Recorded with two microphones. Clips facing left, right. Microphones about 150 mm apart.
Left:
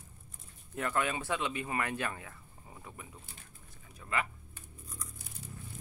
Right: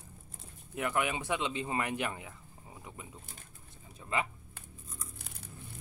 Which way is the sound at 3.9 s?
25° right (ahead or behind).